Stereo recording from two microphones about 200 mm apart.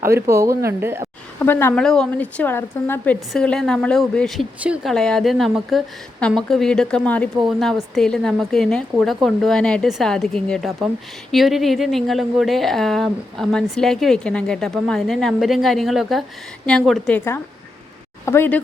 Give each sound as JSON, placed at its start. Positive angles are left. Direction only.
{"t": 0.0, "sound": "speech", "side_deg": -15}
{"t": 1.4, "sound": "a woman's voice", "side_deg": 10}